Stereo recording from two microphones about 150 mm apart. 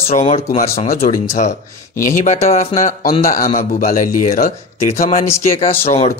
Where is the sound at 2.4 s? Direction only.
50° left (ahead or behind).